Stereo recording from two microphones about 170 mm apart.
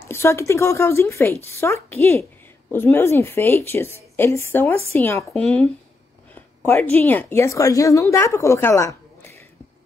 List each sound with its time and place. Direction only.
0.1 s a woman's voice: 15° left (ahead or behind)